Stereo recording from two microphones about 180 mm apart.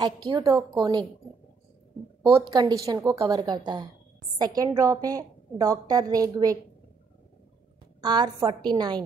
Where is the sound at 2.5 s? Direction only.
25° right (ahead or behind).